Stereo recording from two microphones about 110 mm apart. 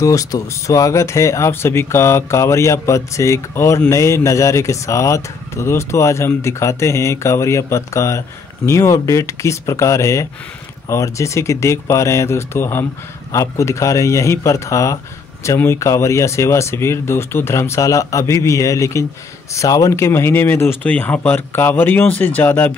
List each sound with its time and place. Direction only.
0.0 s speech: 30° left (ahead or behind); by 22.7 s 15° left (ahead or behind)